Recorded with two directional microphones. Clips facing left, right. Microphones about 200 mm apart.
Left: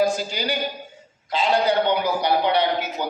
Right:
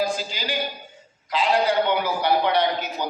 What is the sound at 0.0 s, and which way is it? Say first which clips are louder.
Speech: left 4 dB; 45° left (ahead or behind).